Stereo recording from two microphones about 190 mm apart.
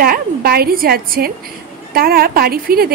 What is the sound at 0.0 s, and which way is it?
A woman's voice, 50° right (ahead or behind).